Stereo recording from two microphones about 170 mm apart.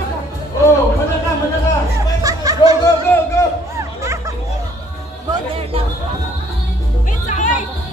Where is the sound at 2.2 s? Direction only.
20° right (ahead or behind).